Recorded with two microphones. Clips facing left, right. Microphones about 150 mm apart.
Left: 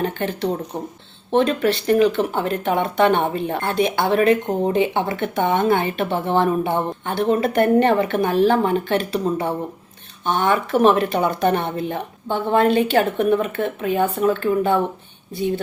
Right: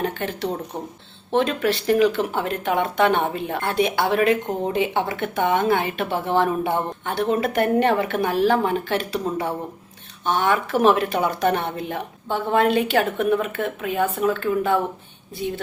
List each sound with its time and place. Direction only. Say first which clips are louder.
0.0 s a woman's voice: left 3 dB; centre (ahead or behind)
14.3 s speech: left 3 dB; 25° left (ahead or behind)